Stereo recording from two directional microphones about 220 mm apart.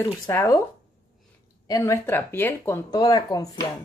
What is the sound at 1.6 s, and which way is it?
Speech, 15° left (ahead or behind).